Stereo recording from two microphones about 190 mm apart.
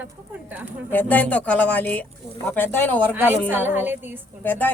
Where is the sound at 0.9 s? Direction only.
10° left (ahead or behind).